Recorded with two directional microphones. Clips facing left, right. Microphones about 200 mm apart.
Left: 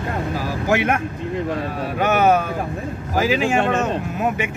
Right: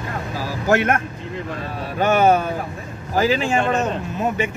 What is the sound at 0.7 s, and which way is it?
Speech, 10° left (ahead or behind).